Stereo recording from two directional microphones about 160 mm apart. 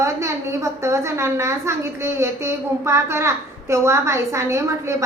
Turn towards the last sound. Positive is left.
turn(degrees=-20)  # may be behind; listen again after turning